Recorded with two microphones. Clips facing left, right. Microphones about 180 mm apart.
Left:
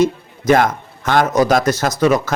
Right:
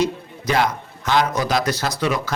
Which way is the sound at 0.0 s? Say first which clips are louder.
Left 6 dB; 50° left (ahead or behind).